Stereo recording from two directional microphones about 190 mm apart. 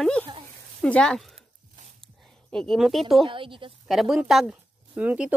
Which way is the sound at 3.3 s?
25° right (ahead or behind).